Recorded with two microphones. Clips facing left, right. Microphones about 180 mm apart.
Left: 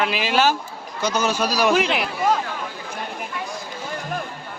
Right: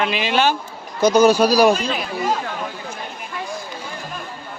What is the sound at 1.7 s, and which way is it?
Speech, 75° left (ahead or behind).